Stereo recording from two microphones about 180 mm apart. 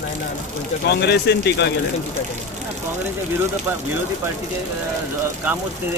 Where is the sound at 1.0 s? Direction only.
70° left (ahead or behind).